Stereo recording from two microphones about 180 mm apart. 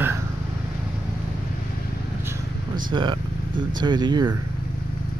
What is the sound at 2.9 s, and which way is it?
Speech, 25° right (ahead or behind).